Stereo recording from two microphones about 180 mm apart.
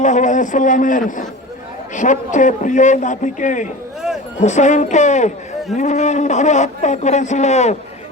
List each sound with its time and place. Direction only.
0.0 s a man's voice: 40° left (ahead or behind)